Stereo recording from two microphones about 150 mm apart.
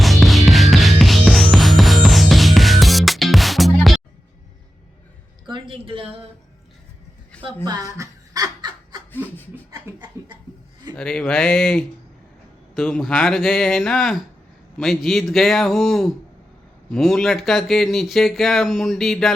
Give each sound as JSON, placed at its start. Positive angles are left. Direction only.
{"t": 0.0, "sound": "music", "side_deg": 0}
{"t": 5.5, "sound": "a sound", "side_deg": -35}
{"t": 7.4, "sound": "a woman's voice", "side_deg": -30}
{"t": 7.9, "sound": "laughter", "side_deg": -25}
{"t": 10.2, "sound": "a sound", "side_deg": -20}
{"t": 10.9, "sound": "speech", "side_deg": 5}